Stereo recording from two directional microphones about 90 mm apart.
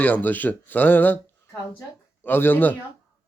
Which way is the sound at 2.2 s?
20° left (ahead or behind).